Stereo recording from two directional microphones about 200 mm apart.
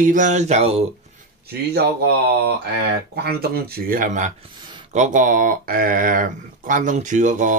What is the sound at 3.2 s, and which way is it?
Speech, 50° right (ahead or behind).